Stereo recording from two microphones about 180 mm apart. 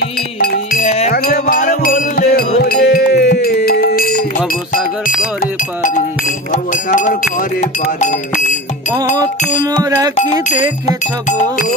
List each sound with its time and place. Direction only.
0.4 s music: 55° left (ahead or behind)
6.5 s speech: 45° left (ahead or behind)
9.8 s music: 20° right (ahead or behind)
10.1 s speech: 40° left (ahead or behind)